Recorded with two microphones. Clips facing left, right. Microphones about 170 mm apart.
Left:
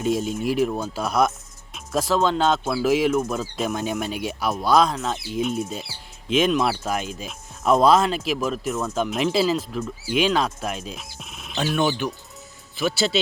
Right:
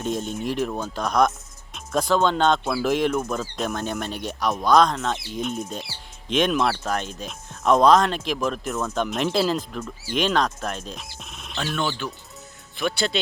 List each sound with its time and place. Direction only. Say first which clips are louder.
0.0 s speech: left 4 dB; 5° left (ahead or behind)
11.8 s speech: left 5 dB; 15° left (ahead or behind)
12.7 s speech: left 2 dB; 5° left (ahead or behind)